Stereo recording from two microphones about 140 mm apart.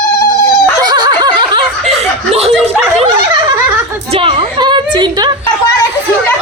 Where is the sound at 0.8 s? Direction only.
30° right (ahead or behind); by 2.7 s 45° right (ahead or behind).